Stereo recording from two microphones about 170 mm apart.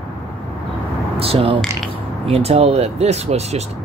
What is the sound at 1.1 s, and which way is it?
Speech, 35° right (ahead or behind).